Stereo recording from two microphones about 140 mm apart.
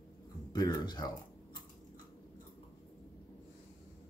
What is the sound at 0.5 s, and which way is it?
Speech, 30° left (ahead or behind).